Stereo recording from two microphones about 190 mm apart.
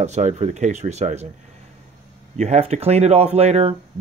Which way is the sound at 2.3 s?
35° right (ahead or behind).